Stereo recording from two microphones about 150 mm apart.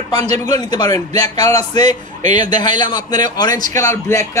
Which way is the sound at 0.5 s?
25° left (ahead or behind).